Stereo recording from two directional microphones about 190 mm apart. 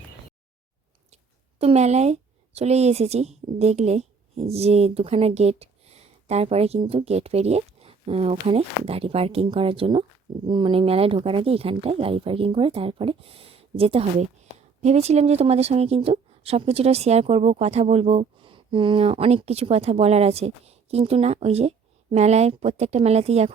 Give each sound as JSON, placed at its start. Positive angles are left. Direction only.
{"t": 1.1, "sound": "speech", "side_deg": -35}